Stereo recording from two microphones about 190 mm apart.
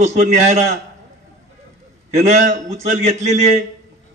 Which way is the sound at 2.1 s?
35° right (ahead or behind).